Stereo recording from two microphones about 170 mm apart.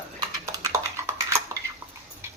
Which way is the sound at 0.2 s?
20° right (ahead or behind).